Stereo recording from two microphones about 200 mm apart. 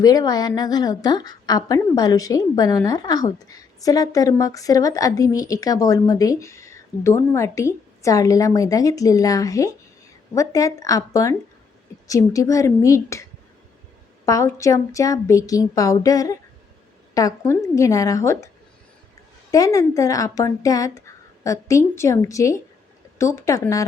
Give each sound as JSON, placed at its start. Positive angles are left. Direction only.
{"t": 0.0, "sound": "a woman's voice", "side_deg": 20}
{"t": 14.3, "sound": "a woman's voice", "side_deg": 15}
{"t": 19.5, "sound": "a woman's voice", "side_deg": 15}